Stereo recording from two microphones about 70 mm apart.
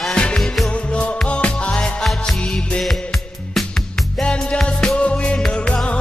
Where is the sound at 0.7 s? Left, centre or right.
Centre.